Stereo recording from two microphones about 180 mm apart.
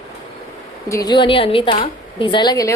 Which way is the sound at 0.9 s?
20° left (ahead or behind).